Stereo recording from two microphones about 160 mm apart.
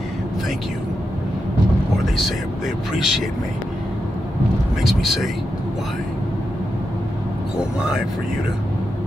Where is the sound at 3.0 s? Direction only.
Centre (ahead or behind).